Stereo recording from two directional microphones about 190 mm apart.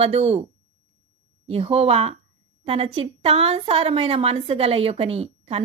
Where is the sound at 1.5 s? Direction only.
30° right (ahead or behind).